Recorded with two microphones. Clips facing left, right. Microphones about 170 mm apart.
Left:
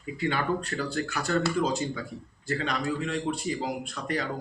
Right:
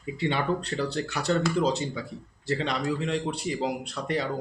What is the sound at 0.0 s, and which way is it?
Speech, 25° right (ahead or behind).